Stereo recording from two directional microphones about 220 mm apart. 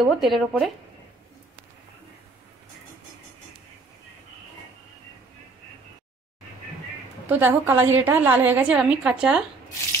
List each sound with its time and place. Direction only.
0.0 s speech: centre (ahead or behind)
7.2 s a woman's voice: 10° right (ahead or behind)